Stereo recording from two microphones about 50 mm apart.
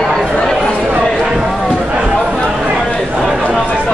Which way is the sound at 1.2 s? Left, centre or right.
Centre.